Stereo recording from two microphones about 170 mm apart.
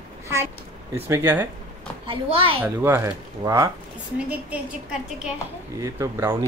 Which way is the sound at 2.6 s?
15° right (ahead or behind).